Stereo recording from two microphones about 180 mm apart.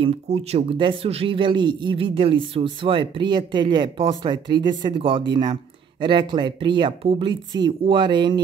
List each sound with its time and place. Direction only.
0.0 s speech: 35° right (ahead or behind)